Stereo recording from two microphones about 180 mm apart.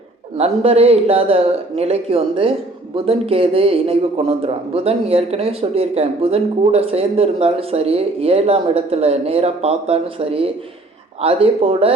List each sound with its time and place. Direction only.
0.3 s speech: 35° right (ahead or behind)